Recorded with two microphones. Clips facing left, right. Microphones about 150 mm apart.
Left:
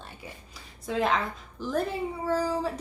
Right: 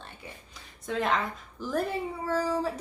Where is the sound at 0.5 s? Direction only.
5° left (ahead or behind).